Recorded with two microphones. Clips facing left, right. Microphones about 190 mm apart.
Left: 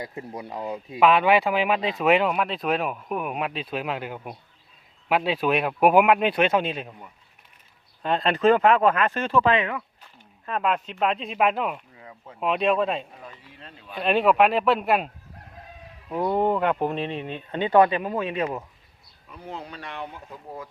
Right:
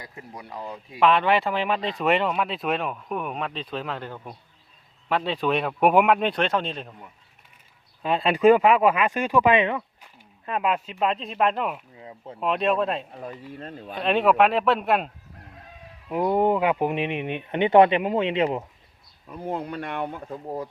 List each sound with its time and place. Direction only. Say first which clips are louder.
0.0 s speech: left 6 dB; 25° left (ahead or behind)
0.9 s speech: left 2 dB; 5° left (ahead or behind)
8.0 s speech: right 2 dB; 5° right (ahead or behind)
10.4 s speech: even; 10° right (ahead or behind)
11.9 s a sound: right 4 dB; 25° right (ahead or behind)
12.4 s speech: left 1 dB; centre (ahead or behind)
13.5 s speech: right 10 dB; 45° right (ahead or behind)
13.9 s speech: even; centre (ahead or behind)
16.0 s speech: right 2 dB; 10° right (ahead or behind)
19.4 s speech: right 7 dB; 55° right (ahead or behind)